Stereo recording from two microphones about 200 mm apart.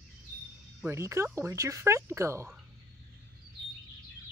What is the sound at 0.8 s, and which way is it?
Speech, 15° right (ahead or behind).